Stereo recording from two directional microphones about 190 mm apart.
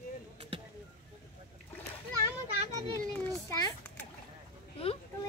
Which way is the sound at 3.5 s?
20° left (ahead or behind).